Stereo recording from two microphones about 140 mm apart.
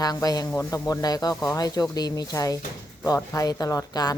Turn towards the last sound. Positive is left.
turn(degrees=25)  # may be behind; listen again after turning